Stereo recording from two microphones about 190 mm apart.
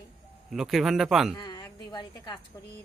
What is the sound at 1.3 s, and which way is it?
A woman's voice, 20° left (ahead or behind).